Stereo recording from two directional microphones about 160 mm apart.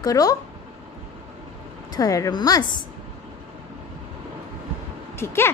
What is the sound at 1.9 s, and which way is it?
Speech, 20° left (ahead or behind).